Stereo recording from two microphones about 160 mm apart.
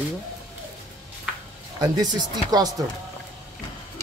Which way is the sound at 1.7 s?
25° right (ahead or behind).